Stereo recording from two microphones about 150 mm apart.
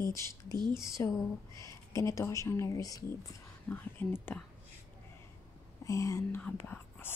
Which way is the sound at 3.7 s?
10° left (ahead or behind).